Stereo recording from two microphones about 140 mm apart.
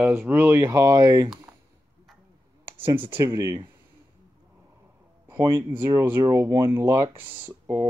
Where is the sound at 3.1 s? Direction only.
20° right (ahead or behind).